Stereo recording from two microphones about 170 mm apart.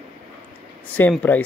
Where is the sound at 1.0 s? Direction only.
10° left (ahead or behind).